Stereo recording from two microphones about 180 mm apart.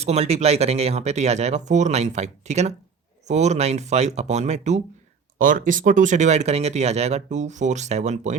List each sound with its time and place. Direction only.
0.0 s speech: 35° right (ahead or behind)
5.4 s speech: 50° right (ahead or behind)